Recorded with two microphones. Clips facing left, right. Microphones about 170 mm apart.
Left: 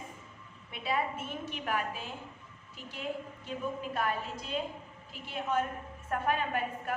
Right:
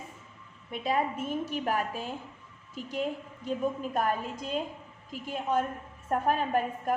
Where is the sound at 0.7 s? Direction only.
40° right (ahead or behind).